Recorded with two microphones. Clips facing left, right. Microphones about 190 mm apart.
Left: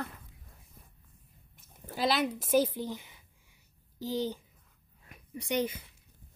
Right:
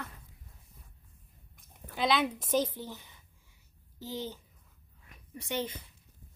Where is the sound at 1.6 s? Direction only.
5° left (ahead or behind).